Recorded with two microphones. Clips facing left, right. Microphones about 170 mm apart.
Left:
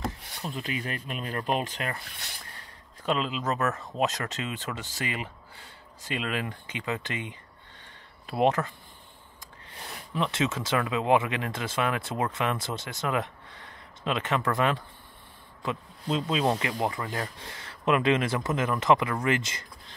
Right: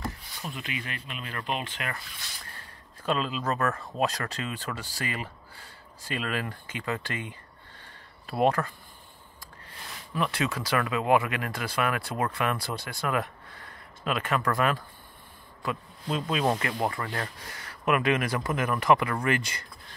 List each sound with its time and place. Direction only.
0.4 s speech: 35° left (ahead or behind)
2.0 s speech: 65° left (ahead or behind)
2.5 s a sound: 20° left (ahead or behind)
4.0 s speech: 20° left (ahead or behind)
7.8 s a sound: 20° left (ahead or behind)
10.1 s speech: 20° left (ahead or behind)